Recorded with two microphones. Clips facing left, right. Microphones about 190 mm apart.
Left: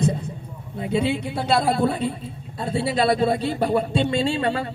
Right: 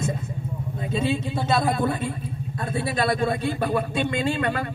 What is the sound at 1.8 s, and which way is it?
Speech, 20° left (ahead or behind).